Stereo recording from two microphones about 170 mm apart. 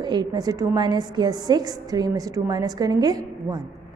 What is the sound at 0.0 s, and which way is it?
A woman's voice, 25° right (ahead or behind).